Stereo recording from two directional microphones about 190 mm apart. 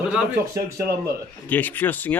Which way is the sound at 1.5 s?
10° left (ahead or behind).